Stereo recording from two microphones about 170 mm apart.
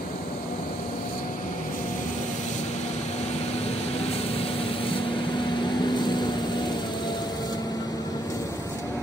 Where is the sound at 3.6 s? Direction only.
35° left (ahead or behind); by 8.9 s 20° left (ahead or behind).